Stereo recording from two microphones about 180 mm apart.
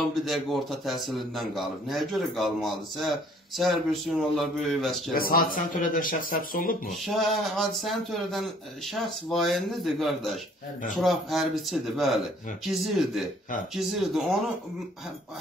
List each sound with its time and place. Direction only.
0.2 s a man's voice: centre (ahead or behind)
5.1 s speech: 55° left (ahead or behind)
6.9 s a man's voice: centre (ahead or behind)